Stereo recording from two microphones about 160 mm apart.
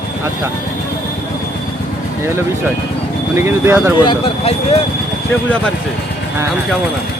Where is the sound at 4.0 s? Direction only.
30° left (ahead or behind).